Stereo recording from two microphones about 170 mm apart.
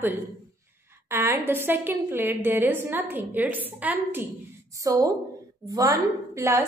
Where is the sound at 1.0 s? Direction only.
15° right (ahead or behind).